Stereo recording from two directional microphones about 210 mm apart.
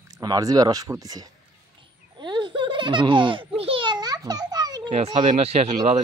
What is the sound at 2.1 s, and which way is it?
Baby laughter, 20° right (ahead or behind).